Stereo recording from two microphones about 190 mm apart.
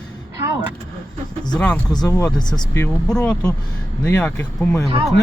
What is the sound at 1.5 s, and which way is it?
Speech, 5° left (ahead or behind).